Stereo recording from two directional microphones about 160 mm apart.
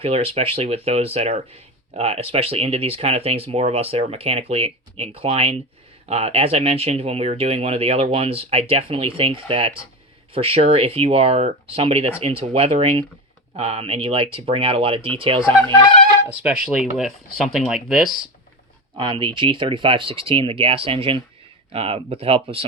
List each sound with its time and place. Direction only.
0.0 s speech: 40° right (ahead or behind)
16.6 s speech: centre (ahead or behind)
18.9 s speech: 30° right (ahead or behind)